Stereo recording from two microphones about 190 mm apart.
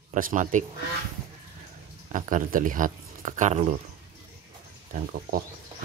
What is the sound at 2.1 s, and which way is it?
Speech, 45° right (ahead or behind).